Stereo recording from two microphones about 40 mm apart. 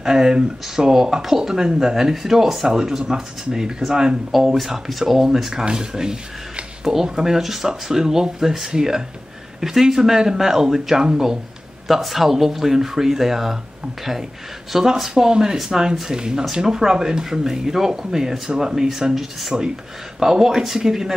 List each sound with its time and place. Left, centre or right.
0.0 s speech: centre
4.6 s speech: centre
14.7 s speech: centre